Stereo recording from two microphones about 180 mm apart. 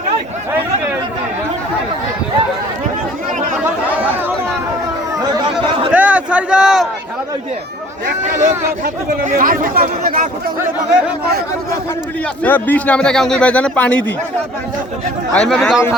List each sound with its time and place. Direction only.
5.9 s a sound: 10° right (ahead or behind)
8.8 s speech: 45° right (ahead or behind)
12.4 s speech: 10° left (ahead or behind)
15.3 s a man's voice: 5° left (ahead or behind)